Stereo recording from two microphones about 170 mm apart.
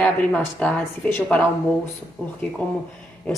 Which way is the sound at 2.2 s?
Centre (ahead or behind).